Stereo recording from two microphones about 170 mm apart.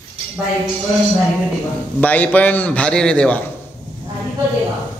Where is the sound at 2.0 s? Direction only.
10° left (ahead or behind).